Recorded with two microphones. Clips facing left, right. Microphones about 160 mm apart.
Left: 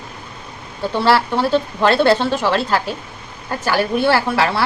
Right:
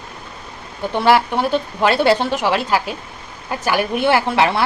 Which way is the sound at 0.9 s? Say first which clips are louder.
Right 1 dB; 15° right (ahead or behind).